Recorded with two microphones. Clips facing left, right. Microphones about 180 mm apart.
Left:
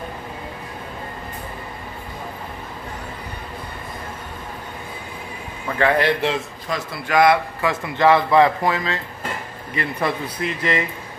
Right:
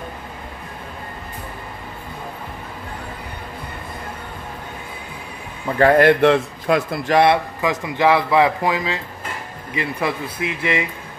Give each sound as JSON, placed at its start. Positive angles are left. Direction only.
{"t": 5.8, "sound": "a man's voice", "side_deg": -45}
{"t": 7.1, "sound": "a man's voice", "side_deg": -30}
{"t": 7.6, "sound": "speech", "side_deg": -15}